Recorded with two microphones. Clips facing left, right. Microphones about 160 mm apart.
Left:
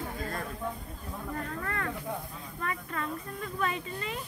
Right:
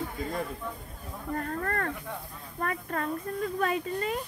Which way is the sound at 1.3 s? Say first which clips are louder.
Right 6 dB; 45° right (ahead or behind).